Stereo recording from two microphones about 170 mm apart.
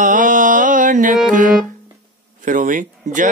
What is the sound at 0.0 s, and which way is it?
Music, 50° right (ahead or behind).